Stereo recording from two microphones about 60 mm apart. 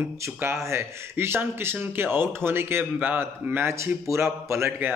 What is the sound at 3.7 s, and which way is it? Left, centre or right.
Speech, right.